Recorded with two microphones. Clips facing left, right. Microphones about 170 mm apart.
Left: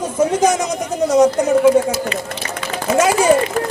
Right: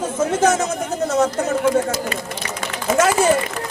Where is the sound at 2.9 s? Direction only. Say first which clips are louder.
Left 2 dB; 10° left (ahead or behind).